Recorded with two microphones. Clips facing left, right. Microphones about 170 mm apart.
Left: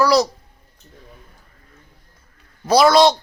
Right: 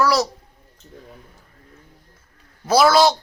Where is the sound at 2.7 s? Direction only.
5° right (ahead or behind).